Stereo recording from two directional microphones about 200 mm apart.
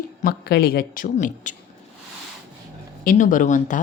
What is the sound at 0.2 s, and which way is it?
Speech, 45° left (ahead or behind).